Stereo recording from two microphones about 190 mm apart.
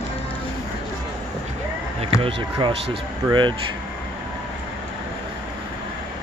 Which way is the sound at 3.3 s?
25° right (ahead or behind).